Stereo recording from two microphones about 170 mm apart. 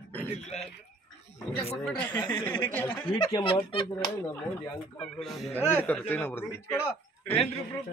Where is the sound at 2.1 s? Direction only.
25° left (ahead or behind).